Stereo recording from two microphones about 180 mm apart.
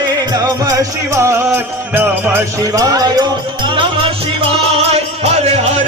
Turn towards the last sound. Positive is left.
turn(degrees=-35)  # may be behind; listen again after turning